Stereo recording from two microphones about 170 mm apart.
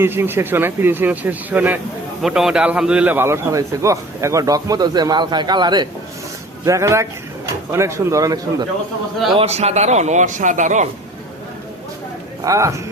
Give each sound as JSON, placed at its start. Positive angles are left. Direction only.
{"t": 0.0, "sound": "a man's voice", "side_deg": -15}
{"t": 9.4, "sound": "speech", "side_deg": -40}
{"t": 12.5, "sound": "speech", "side_deg": -15}